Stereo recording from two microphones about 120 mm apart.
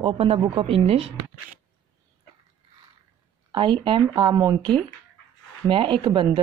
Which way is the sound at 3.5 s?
40° right (ahead or behind).